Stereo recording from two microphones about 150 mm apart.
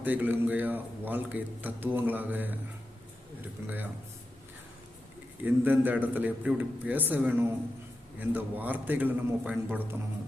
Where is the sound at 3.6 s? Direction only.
15° right (ahead or behind).